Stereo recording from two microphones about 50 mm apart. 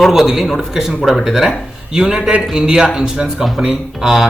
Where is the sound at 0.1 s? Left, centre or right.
Centre.